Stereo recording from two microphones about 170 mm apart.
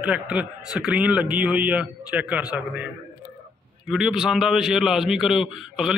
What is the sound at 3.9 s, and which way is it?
A man's voice, 5° right (ahead or behind).